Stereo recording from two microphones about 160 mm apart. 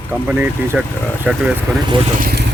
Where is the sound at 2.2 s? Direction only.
80° right.